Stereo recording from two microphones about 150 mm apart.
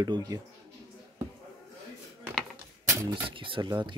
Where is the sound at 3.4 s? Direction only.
35° right (ahead or behind).